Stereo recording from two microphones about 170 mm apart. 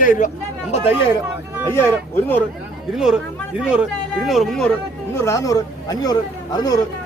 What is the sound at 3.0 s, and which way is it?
Speech, 5° right (ahead or behind).